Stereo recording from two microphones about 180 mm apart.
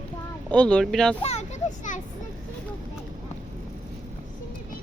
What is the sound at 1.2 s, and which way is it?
Speech, 35° left (ahead or behind).